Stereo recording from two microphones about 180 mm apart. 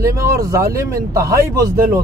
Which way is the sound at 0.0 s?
20° right (ahead or behind).